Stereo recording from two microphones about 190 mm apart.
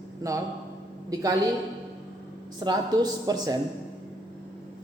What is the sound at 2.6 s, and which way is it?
Speech, 20° right (ahead or behind).